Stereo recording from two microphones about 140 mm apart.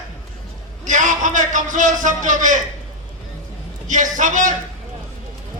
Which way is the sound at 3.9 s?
65° right (ahead or behind).